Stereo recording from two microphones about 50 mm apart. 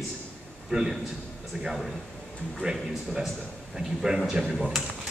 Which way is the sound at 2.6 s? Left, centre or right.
Centre.